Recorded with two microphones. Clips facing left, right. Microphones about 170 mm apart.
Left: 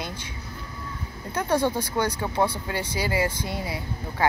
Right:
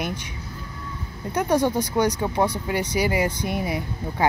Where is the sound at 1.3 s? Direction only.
15° right (ahead or behind).